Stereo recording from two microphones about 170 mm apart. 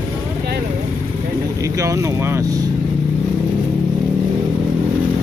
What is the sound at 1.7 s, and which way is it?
Speech, 20° right (ahead or behind).